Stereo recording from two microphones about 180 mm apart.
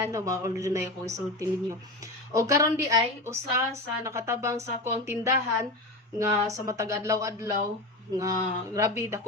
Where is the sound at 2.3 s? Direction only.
15° right (ahead or behind).